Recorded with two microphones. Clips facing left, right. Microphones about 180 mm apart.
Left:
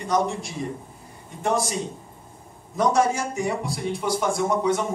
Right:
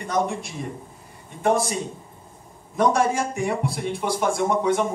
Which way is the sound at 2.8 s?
55° right (ahead or behind).